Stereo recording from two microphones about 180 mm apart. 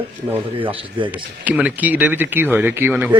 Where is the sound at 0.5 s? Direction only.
30° right (ahead or behind).